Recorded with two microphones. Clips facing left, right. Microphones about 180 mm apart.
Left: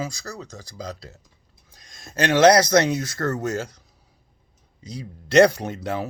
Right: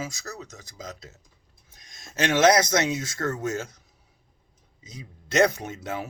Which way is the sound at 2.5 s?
35° left (ahead or behind).